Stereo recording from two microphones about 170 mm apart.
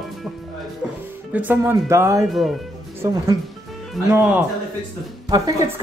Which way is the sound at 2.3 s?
Centre (ahead or behind).